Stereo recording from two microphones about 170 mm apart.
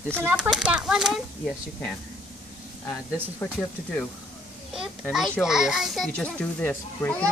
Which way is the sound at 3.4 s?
15° left (ahead or behind).